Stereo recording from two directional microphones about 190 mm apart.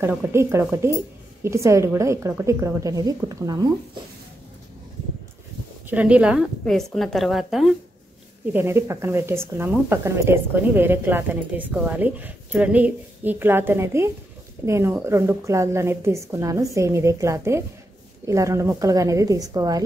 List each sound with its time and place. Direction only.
0.0 s speech: 10° right (ahead or behind)
5.9 s a woman's voice: 5° right (ahead or behind)
8.5 s speech: 15° right (ahead or behind)